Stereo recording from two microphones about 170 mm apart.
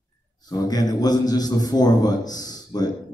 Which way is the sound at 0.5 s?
25° left (ahead or behind).